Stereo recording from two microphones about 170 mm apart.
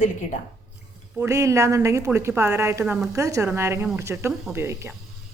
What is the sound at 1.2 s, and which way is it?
A woman's voice, 15° right (ahead or behind).